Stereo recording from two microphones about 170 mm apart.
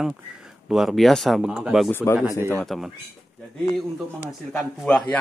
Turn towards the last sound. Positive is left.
turn(degrees=5)  # may be behind; listen again after turning